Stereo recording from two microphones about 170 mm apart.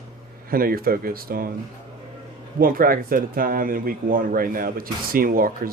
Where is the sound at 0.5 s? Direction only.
60° right (ahead or behind).